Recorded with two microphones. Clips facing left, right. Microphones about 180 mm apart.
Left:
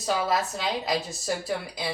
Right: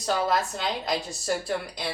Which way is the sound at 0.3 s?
5° left (ahead or behind).